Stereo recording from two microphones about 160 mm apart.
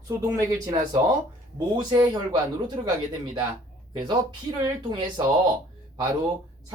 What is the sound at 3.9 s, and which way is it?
Speech, 25° right (ahead or behind).